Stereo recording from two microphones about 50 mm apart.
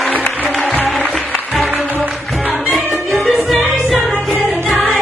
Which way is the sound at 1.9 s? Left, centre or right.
Right.